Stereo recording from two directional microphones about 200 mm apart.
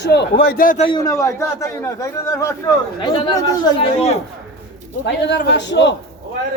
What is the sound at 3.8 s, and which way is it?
Speech, 30° left (ahead or behind).